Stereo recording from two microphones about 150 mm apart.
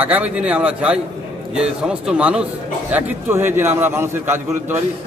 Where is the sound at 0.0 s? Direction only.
10° right (ahead or behind).